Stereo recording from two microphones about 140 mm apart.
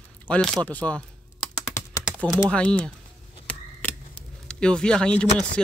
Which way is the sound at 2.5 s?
10° left (ahead or behind).